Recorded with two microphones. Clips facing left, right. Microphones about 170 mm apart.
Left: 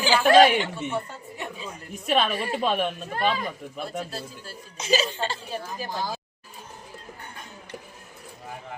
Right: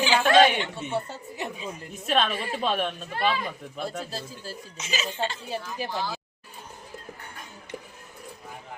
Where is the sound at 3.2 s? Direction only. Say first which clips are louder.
Even; 45° left (ahead or behind).